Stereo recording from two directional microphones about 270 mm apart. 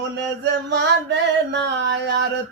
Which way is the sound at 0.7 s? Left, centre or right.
Right.